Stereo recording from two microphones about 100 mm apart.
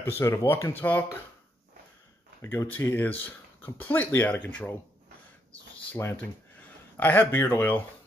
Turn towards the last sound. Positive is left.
turn(degrees=20)  # may be behind; listen again after turning